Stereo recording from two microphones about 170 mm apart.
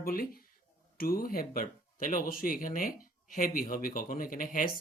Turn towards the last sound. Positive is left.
turn(degrees=55)  # may be behind; listen again after turning